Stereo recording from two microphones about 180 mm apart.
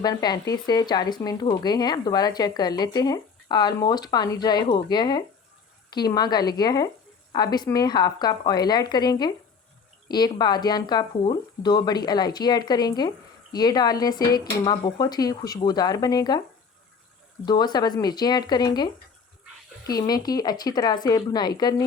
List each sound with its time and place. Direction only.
0.0 s speech: 20° left (ahead or behind)
17.4 s speech: 25° left (ahead or behind)
19.9 s speech: 20° left (ahead or behind)